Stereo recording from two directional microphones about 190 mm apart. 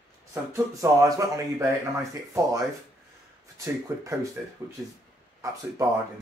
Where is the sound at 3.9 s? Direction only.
15° right (ahead or behind).